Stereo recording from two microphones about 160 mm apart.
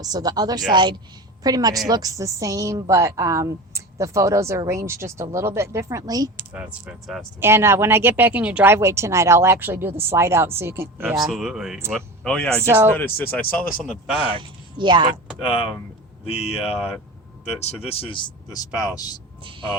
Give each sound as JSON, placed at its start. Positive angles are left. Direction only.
{"t": 0.0, "sound": "a woman's voice", "side_deg": -25}
{"t": 6.5, "sound": "speech", "side_deg": -10}
{"t": 11.3, "sound": "speech", "side_deg": 0}
{"t": 12.6, "sound": "speech", "side_deg": -15}
{"t": 13.0, "sound": "speech", "side_deg": 15}
{"t": 13.8, "sound": "speech", "side_deg": 0}
{"t": 14.3, "sound": "speech", "side_deg": -30}
{"t": 15.3, "sound": "speech", "side_deg": 0}
{"t": 17.6, "sound": "speech", "side_deg": 40}